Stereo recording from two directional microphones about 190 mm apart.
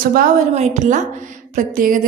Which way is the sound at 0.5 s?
35° right (ahead or behind).